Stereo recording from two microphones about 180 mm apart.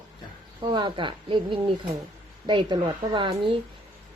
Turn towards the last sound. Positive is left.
turn(degrees=-25)  # may be behind; listen again after turning